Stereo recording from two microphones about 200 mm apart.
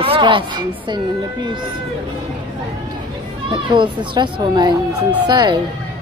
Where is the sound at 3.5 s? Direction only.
25° right (ahead or behind).